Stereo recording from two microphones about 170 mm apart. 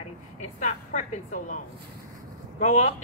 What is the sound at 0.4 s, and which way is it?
Speech, 45° left (ahead or behind).